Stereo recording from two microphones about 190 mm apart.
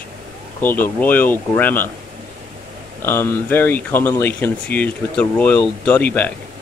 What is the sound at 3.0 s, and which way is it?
Speech, 10° left (ahead or behind).